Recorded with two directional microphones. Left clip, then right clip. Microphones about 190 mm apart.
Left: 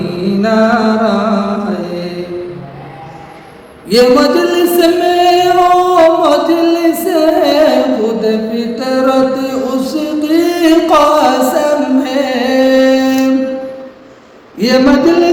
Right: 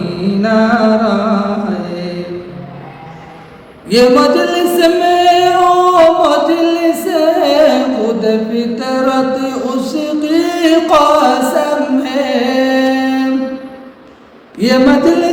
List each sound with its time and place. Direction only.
0.2 s music: centre (ahead or behind)
3.8 s music: 5° right (ahead or behind)
14.6 s a sound: centre (ahead or behind)